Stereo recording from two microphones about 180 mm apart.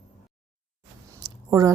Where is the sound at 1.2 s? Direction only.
20° right (ahead or behind).